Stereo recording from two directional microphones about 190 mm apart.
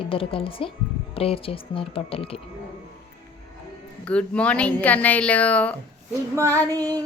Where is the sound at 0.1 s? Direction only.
30° left (ahead or behind).